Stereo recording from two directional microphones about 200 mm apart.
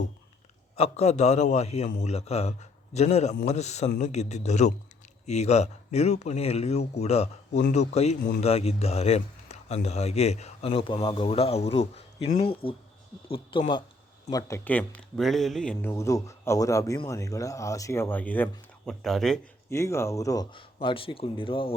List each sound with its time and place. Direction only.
0.8 s a man's voice: 30° left (ahead or behind); by 15.9 s 5° left (ahead or behind)
15.9 s a man's voice: 15° left (ahead or behind)
19.7 s speech: 15° left (ahead or behind)